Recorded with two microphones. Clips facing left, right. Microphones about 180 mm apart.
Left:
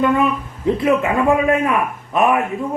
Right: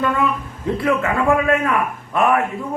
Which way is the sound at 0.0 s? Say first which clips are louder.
Left 3 dB; 20° left (ahead or behind).